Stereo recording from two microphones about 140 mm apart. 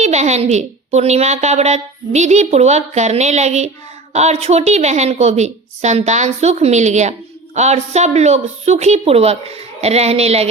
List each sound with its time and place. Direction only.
0.0 s a woman's voice: 55° right (ahead or behind)